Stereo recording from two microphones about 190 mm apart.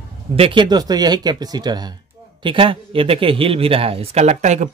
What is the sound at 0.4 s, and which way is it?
Speech, 25° right (ahead or behind).